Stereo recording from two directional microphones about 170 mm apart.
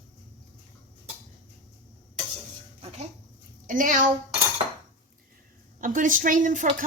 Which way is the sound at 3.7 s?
50° right (ahead or behind).